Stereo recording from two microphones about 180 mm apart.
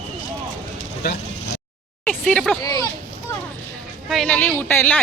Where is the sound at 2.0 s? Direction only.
5° left (ahead or behind).